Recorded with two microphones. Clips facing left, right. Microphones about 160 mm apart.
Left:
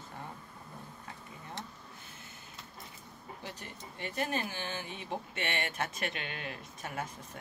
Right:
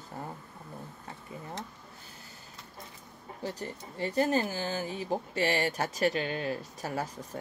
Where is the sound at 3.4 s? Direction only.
35° right (ahead or behind).